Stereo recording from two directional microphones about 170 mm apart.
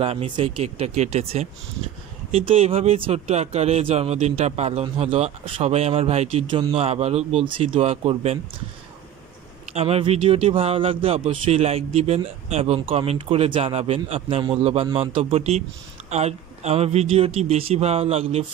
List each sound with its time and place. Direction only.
0.0 s a man's voice: 35° right (ahead or behind)
9.7 s a man's voice: 35° right (ahead or behind)